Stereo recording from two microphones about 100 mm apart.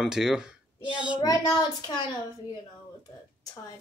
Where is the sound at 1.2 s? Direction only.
40° left (ahead or behind).